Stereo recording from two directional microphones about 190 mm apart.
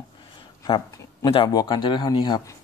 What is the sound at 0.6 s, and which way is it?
Speech, 20° left (ahead or behind).